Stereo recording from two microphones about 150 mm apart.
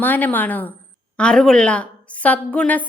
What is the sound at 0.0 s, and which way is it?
A woman's voice, 10° left (ahead or behind).